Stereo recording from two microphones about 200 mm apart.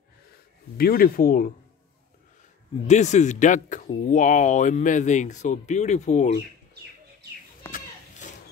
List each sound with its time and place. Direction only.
0.7 s speech: 50° left (ahead or behind)
2.9 s speech: 35° left (ahead or behind)